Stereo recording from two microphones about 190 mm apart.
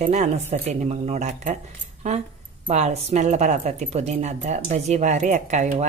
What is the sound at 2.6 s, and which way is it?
Speech, 35° right (ahead or behind).